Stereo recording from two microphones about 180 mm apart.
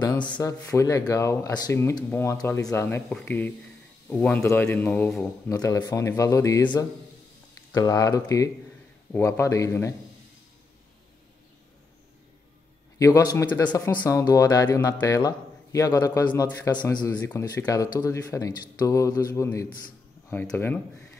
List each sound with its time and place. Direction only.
0.4 s speech: 15° left (ahead or behind)
5.6 s speech: 20° left (ahead or behind)
13.0 s speech: 20° left (ahead or behind)